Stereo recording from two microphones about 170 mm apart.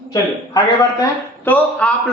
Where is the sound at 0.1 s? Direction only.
20° left (ahead or behind).